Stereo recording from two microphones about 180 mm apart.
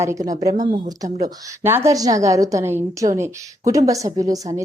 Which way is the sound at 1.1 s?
40° right (ahead or behind).